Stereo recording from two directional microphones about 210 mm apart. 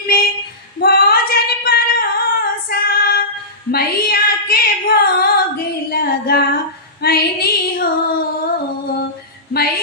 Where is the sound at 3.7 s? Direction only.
45° left (ahead or behind).